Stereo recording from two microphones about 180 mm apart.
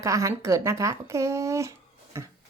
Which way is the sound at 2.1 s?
15° right (ahead or behind).